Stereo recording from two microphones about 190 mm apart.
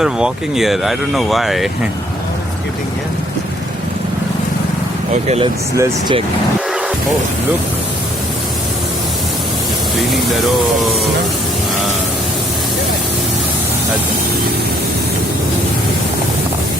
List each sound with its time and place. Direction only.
0.0 s speech: centre (ahead or behind)
5.1 s speech: 35° right (ahead or behind)
5.7 s speech: 15° right (ahead or behind)